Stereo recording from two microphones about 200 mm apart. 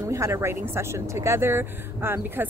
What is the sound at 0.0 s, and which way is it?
Speech, 15° right (ahead or behind).